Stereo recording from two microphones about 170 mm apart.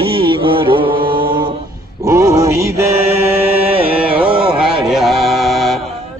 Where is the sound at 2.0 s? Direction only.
20° right (ahead or behind).